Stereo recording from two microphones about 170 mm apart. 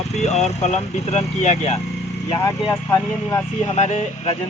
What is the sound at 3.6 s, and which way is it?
Speech, 40° left (ahead or behind).